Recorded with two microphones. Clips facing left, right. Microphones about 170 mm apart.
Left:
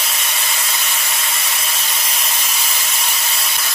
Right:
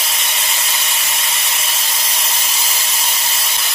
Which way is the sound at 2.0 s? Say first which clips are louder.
Even; 30° right (ahead or behind).